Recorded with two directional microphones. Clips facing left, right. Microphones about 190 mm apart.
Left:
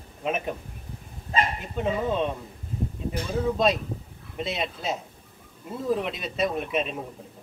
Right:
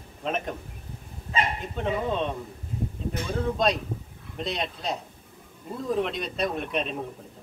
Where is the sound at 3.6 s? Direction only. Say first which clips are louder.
Left 1 dB; 5° left (ahead or behind).